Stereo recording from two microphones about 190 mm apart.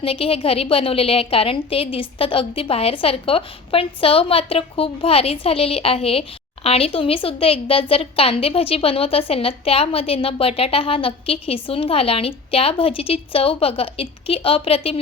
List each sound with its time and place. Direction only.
0.0 s a woman's voice: 30° left (ahead or behind)